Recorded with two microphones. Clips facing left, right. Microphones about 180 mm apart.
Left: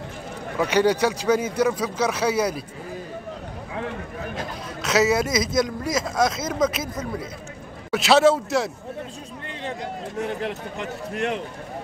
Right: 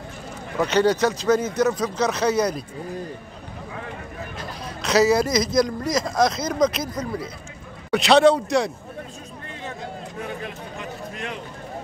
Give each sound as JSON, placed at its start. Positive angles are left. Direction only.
{"t": 0.6, "sound": "speech", "side_deg": 10}
{"t": 4.8, "sound": "speech", "side_deg": 5}
{"t": 10.1, "sound": "speech", "side_deg": 70}